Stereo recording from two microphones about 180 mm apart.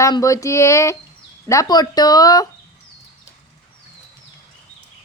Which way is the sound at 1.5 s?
20° left (ahead or behind).